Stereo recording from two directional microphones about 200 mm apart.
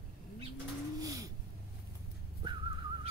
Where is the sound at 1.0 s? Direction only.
15° right (ahead or behind).